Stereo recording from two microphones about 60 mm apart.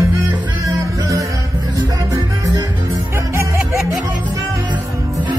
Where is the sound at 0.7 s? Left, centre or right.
Right.